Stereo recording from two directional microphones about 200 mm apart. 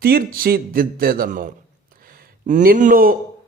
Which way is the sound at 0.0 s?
50° right (ahead or behind).